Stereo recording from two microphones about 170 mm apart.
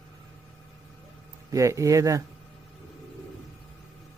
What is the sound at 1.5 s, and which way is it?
Speech, 20° right (ahead or behind).